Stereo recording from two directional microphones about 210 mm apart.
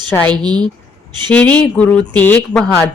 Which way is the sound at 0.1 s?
5° left (ahead or behind).